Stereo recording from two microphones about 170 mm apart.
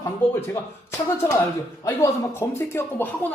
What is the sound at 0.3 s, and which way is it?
Speech, 15° left (ahead or behind).